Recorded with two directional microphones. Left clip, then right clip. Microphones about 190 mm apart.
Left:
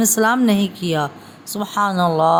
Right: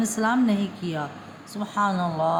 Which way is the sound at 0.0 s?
55° left (ahead or behind).